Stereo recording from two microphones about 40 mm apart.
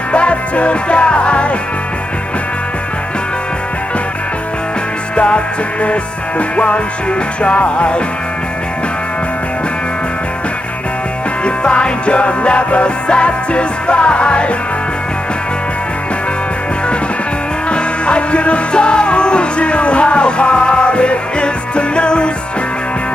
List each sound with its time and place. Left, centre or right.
0.1 s music: left
5.1 s music: left
11.4 s music: left
17.6 s music: left